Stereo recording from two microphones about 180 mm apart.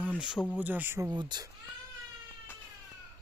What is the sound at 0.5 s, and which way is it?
Speech, 10° right (ahead or behind).